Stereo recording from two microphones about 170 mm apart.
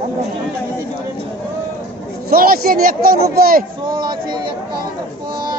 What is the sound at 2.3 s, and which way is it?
Speech, 60° right (ahead or behind).